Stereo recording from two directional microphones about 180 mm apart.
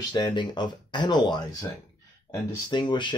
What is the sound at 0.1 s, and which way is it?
Speech, 25° left (ahead or behind).